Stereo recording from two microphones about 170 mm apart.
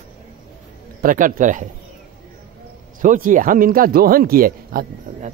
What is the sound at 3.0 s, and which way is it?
Speech, 50° right (ahead or behind).